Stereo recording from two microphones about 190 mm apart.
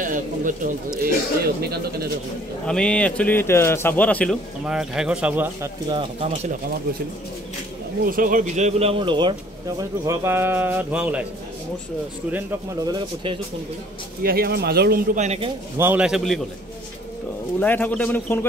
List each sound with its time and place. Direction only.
0.0 s bird: 45° right (ahead or behind)
1.6 s speech: 55° right (ahead or behind)
2.6 s a man's voice: 5° left (ahead or behind)
5.9 s speech: 30° right (ahead or behind)
8.0 s speech: 45° right (ahead or behind); by 11.2 s 5° right (ahead or behind)
12.8 s speech: 25° right (ahead or behind)
14.2 s speech: 55° right (ahead or behind)
15.1 s speech: 35° right (ahead or behind)
15.8 s a man's voice: 5° right (ahead or behind)
17.6 s a man's voice: 10° left (ahead or behind)